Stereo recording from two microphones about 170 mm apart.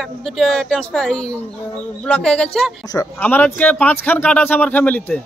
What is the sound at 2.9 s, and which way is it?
Speech, 20° left (ahead or behind).